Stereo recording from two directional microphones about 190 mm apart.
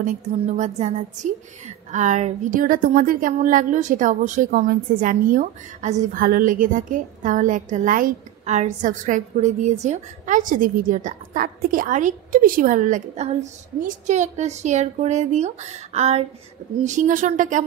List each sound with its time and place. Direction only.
0.0 s a woman's voice: 40° right (ahead or behind)